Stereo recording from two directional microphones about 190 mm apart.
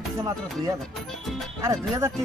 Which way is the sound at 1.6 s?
15° right (ahead or behind).